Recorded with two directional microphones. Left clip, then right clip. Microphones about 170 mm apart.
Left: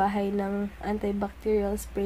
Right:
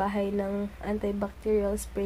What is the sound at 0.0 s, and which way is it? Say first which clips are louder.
A woman's voice: left 2 dB; 20° left (ahead or behind).